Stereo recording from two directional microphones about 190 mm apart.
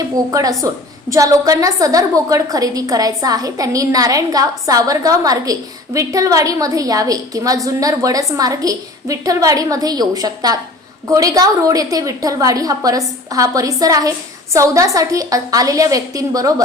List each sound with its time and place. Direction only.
0.3 s a woman's voice: 20° right (ahead or behind)